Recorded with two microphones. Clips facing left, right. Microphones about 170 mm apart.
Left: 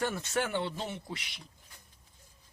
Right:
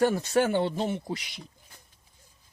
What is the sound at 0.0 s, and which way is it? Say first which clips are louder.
Speech: right 9 dB; 35° right (ahead or behind).